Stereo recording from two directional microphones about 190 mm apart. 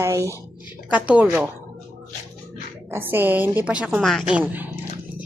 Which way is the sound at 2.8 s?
10° right (ahead or behind).